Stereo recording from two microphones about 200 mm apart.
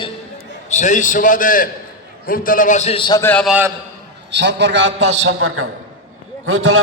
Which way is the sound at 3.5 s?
10° right (ahead or behind).